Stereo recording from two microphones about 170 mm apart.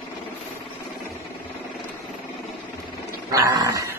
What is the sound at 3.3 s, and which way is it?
Dog, 20° right (ahead or behind).